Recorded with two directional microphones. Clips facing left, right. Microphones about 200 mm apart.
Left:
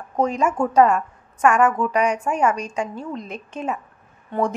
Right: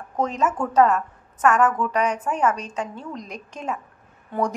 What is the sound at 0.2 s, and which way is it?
A woman's voice, 10° left (ahead or behind).